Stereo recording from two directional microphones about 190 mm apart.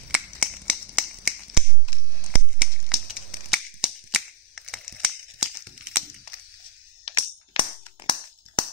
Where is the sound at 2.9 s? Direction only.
Centre (ahead or behind).